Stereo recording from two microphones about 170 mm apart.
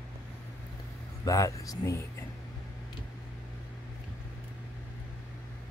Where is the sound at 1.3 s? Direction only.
20° left (ahead or behind).